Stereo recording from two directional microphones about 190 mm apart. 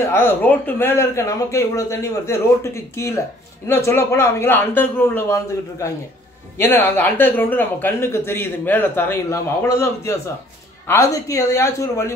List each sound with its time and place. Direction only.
0.1 s speech: 10° left (ahead or behind)